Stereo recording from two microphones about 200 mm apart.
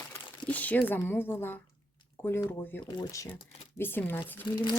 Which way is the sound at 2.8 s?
20° left (ahead or behind).